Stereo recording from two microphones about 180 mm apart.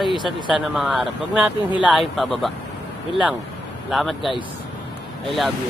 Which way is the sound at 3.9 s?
Centre (ahead or behind).